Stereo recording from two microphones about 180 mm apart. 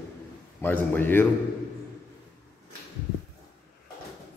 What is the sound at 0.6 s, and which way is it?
Speech, 10° left (ahead or behind).